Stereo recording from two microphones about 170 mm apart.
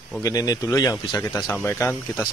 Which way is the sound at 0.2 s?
20° left (ahead or behind).